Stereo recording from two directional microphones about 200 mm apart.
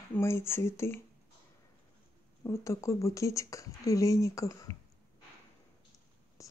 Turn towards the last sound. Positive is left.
turn(degrees=15)  # may be behind; listen again after turning